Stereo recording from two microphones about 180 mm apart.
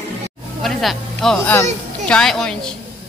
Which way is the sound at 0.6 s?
Centre (ahead or behind).